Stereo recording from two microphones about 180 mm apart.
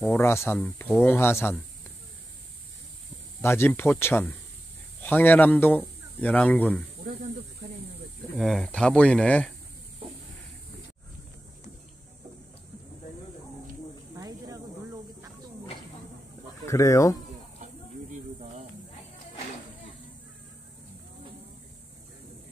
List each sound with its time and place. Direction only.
0.1 s speech: 15° left (ahead or behind)
3.3 s speech: 15° left (ahead or behind)
8.4 s speech: centre (ahead or behind)
14.1 s snake: 20° right (ahead or behind)
16.6 s speech: 15° left (ahead or behind)